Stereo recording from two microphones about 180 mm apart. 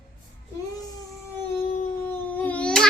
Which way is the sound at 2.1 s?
10° left (ahead or behind).